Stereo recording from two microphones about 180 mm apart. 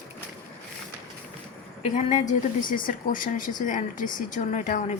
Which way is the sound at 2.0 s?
40° left (ahead or behind).